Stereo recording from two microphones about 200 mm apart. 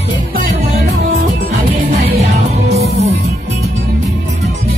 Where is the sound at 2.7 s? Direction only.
30° right (ahead or behind).